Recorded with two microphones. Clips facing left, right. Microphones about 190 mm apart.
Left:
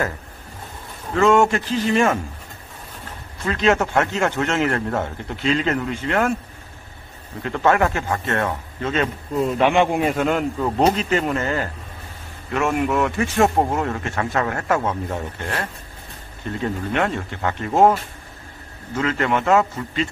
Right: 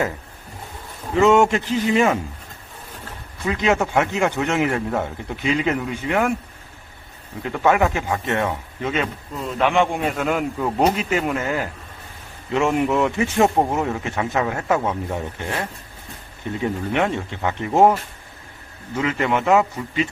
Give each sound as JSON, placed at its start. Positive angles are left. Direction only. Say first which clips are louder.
{"t": 1.1, "sound": "a man's voice", "louder": "right 1 dB", "side_deg": -20}
{"t": 3.4, "sound": "a man's voice", "louder": "left 1 dB", "side_deg": -15}
{"t": 7.4, "sound": "a man's voice", "louder": "even", "side_deg": -15}
{"t": 9.6, "sound": "a man's voice", "louder": "even", "side_deg": 5}
{"t": 12.5, "sound": "a man's voice", "louder": "right 1 dB", "side_deg": -20}
{"t": 16.6, "sound": "a man's voice", "louder": "right 1 dB", "side_deg": -15}